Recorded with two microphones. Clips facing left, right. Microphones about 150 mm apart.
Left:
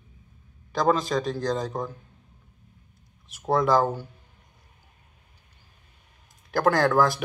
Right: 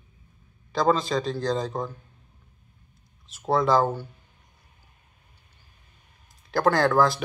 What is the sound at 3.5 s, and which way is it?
Speech, 15° left (ahead or behind).